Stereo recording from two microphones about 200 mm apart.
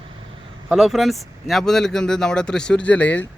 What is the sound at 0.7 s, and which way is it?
Speech, centre (ahead or behind).